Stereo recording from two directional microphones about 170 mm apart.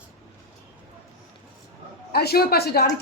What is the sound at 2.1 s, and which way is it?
Speech, 65° left (ahead or behind).